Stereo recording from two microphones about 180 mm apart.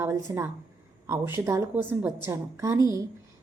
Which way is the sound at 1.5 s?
15° right (ahead or behind).